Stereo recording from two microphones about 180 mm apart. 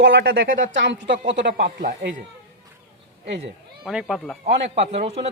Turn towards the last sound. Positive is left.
turn(degrees=-35)  # may be behind; listen again after turning